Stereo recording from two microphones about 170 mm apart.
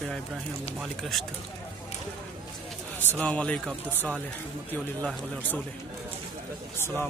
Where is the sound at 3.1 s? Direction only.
10° left (ahead or behind).